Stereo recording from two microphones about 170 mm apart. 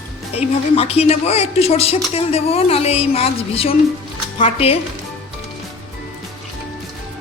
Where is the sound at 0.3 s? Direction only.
40° left (ahead or behind).